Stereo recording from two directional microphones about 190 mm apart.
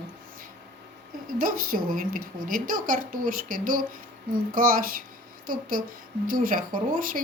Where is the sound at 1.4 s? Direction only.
50° right (ahead or behind).